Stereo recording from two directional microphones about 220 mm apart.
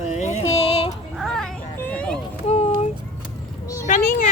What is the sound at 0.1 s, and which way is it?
Music, 30° left (ahead or behind).